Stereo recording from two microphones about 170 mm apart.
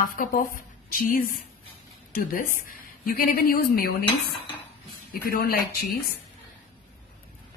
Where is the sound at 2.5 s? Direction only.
55° left (ahead or behind).